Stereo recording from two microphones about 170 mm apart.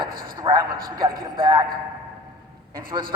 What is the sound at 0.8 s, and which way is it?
Speech, 60° right (ahead or behind).